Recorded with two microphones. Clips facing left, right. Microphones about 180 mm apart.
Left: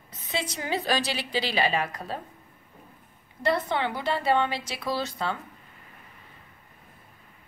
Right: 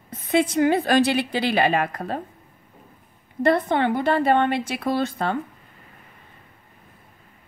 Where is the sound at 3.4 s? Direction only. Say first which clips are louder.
Right 7 dB; 50° right (ahead or behind).